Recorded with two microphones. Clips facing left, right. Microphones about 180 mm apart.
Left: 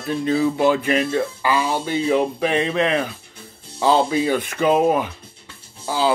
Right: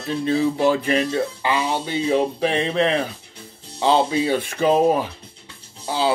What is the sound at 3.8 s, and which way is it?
Speech, 25° right (ahead or behind).